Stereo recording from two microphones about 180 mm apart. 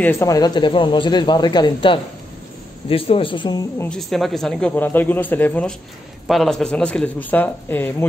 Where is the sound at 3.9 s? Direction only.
Centre (ahead or behind).